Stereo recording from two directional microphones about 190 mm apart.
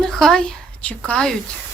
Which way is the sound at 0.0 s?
5° left (ahead or behind).